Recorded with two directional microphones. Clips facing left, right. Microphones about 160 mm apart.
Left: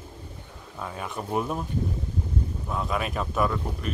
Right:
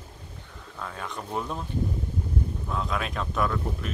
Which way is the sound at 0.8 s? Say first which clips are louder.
Left 2 dB; 10° left (ahead or behind).